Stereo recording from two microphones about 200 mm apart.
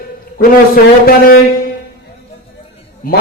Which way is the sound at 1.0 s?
50° left (ahead or behind).